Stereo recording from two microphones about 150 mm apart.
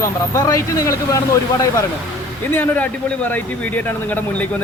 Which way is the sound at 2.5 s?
10° left (ahead or behind).